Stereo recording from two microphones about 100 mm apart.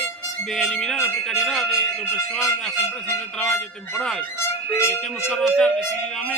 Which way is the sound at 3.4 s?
5° left (ahead or behind).